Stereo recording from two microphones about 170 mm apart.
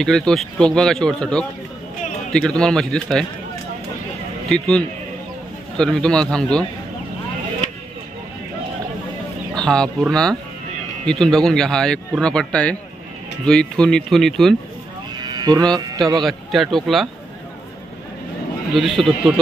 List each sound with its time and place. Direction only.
0.0 s speech: 5° left (ahead or behind)
4.5 s speech: 5° left (ahead or behind)
9.6 s speech: 5° left (ahead or behind)
15.2 s cattle: 25° right (ahead or behind)
15.7 s a man's voice: 20° right (ahead or behind)
16.2 s speech: centre (ahead or behind)
18.7 s speech: centre (ahead or behind)